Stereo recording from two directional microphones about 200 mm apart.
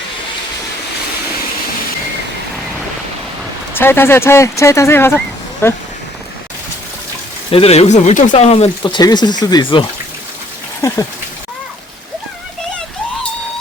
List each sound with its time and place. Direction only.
3.8 s speech: 10° left (ahead or behind)
7.5 s speech: 30° left (ahead or behind)
10.8 s a sound: 15° left (ahead or behind)